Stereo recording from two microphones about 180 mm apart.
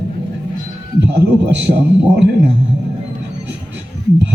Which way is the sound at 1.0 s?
80° right.